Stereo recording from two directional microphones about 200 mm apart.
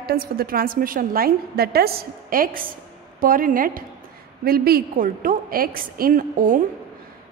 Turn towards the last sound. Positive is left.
turn(degrees=-45)  # may be behind; listen again after turning